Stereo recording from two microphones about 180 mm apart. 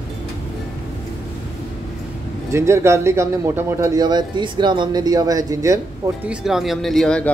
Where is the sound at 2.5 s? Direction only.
15° right (ahead or behind).